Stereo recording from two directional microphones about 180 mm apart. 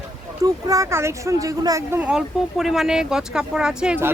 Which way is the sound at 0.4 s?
20° right (ahead or behind).